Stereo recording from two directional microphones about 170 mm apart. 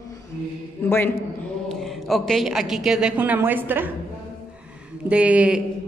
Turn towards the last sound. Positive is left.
turn(degrees=-5)  # may be behind; listen again after turning